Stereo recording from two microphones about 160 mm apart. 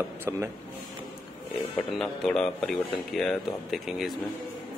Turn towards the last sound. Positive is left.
turn(degrees=0)  # may be behind; listen again after turning